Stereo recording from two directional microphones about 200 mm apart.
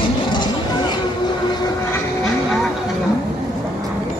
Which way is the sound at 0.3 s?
20° left (ahead or behind).